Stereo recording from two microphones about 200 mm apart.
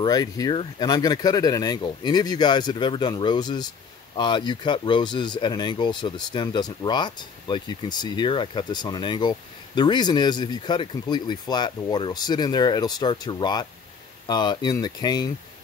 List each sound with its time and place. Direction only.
0.0 s speech: 20° left (ahead or behind)